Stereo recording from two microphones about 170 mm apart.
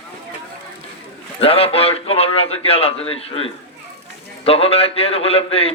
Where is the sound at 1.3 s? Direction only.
35° left (ahead or behind).